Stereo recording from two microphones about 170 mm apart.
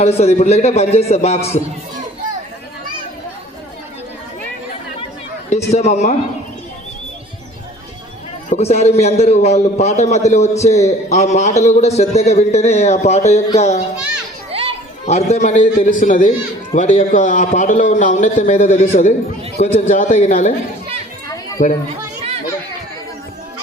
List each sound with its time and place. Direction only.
0.0 s a man's voice: 40° left (ahead or behind)
5.7 s a man's voice: 40° left (ahead or behind)
8.4 s a man's voice: 40° left (ahead or behind)
15.0 s a man's voice: 40° left (ahead or behind)
21.6 s a man's voice: 45° left (ahead or behind)